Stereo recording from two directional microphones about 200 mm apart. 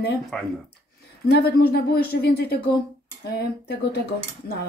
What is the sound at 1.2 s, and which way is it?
Speech, 50° left (ahead or behind).